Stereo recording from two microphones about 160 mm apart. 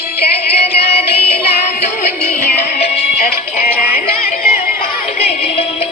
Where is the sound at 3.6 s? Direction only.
65° left (ahead or behind).